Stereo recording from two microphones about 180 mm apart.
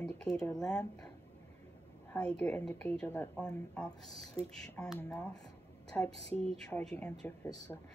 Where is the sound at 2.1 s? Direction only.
5° left (ahead or behind).